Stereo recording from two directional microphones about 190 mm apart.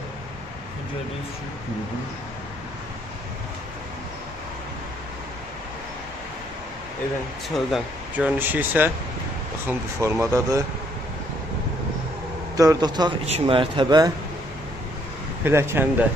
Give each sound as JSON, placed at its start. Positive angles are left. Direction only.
{"t": 7.4, "sound": "speech", "side_deg": 0}
{"t": 12.5, "sound": "speech", "side_deg": -20}
{"t": 15.4, "sound": "speech", "side_deg": -10}